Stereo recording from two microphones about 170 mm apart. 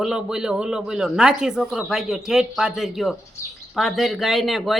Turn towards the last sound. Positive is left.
turn(degrees=0)  # may be behind; listen again after turning